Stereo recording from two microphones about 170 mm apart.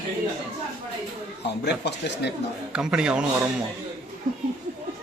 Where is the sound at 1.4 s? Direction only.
80° left.